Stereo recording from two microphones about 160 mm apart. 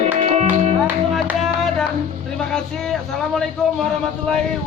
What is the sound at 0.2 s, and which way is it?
Music, 45° right (ahead or behind).